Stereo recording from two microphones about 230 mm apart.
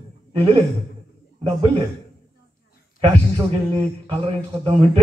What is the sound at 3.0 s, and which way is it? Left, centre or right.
A man's voice, right.